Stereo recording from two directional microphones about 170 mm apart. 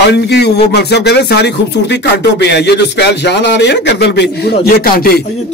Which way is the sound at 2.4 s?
90° left.